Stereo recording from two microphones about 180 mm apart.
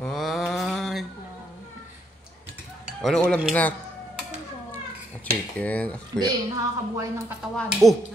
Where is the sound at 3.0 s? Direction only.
5° left (ahead or behind).